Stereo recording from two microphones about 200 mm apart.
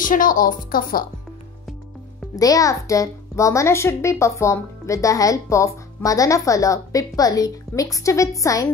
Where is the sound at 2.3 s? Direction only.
15° left (ahead or behind).